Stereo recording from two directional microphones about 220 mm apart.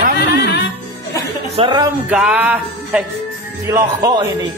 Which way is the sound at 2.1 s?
5° right (ahead or behind).